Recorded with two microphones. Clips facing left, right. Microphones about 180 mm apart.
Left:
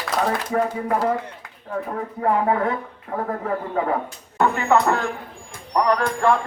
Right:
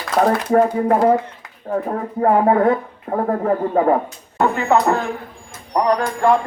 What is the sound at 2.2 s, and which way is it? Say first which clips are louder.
Speech: right 6 dB; 45° right (ahead or behind).